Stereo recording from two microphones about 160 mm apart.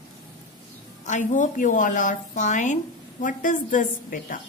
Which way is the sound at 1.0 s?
50° left (ahead or behind).